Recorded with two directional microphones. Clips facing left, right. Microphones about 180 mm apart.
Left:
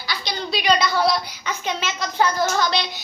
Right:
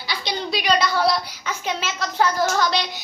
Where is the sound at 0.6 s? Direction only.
Centre (ahead or behind).